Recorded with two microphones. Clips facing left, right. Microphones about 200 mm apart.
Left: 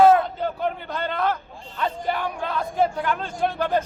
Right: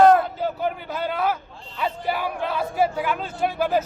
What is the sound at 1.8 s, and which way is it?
A man's voice, 5° right (ahead or behind).